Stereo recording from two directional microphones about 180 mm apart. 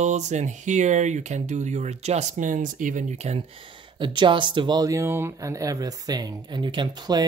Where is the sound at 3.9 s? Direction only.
25° right (ahead or behind).